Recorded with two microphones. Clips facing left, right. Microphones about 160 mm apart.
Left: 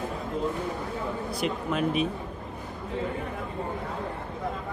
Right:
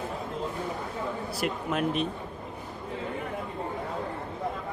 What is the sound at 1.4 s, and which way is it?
Speech, 5° right (ahead or behind).